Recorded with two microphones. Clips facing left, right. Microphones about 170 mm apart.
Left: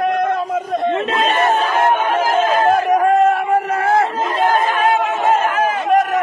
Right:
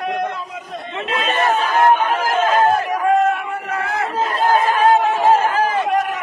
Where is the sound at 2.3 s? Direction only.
50° left (ahead or behind).